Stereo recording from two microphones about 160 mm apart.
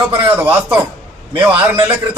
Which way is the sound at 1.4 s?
30° right (ahead or behind).